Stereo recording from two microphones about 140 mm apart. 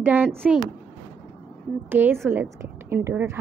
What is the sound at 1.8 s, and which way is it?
A woman's voice, 15° right (ahead or behind).